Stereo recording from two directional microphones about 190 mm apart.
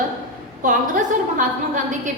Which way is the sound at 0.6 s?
45° right (ahead or behind).